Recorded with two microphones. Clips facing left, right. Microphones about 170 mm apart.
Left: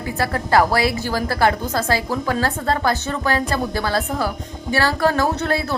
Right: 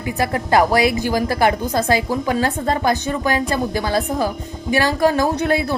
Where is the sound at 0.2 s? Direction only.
20° right (ahead or behind).